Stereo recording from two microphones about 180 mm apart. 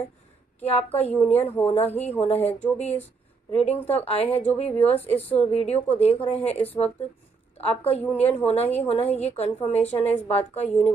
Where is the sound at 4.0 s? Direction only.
35° left (ahead or behind).